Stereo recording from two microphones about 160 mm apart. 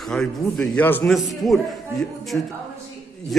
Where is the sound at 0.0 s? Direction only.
5° left (ahead or behind).